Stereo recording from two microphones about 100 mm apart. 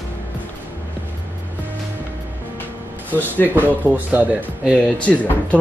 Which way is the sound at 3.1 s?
15° left (ahead or behind).